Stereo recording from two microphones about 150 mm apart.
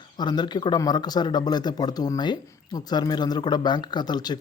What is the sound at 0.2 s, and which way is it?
Speech, 30° left (ahead or behind).